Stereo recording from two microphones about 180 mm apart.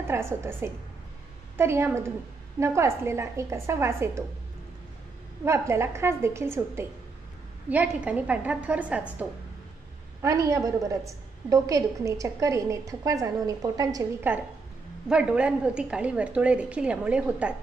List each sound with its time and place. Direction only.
0.0 s a woman's voice: 15° right (ahead or behind)
5.4 s a woman's voice: 15° right (ahead or behind)
10.2 s a woman's voice: 20° right (ahead or behind)